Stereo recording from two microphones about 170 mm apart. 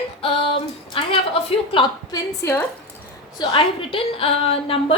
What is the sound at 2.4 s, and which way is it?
Speech, 10° left (ahead or behind).